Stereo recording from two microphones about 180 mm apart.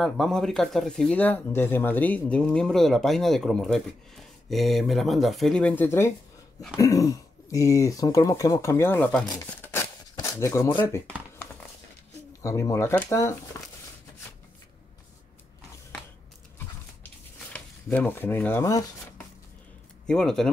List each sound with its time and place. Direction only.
0.0 s speech: centre (ahead or behind)
9.5 s a sound: 10° left (ahead or behind)
10.1 s speech: 20° left (ahead or behind)
12.4 s speech: 15° left (ahead or behind)
17.4 s speech: 10° left (ahead or behind)
20.1 s speech: 5° left (ahead or behind)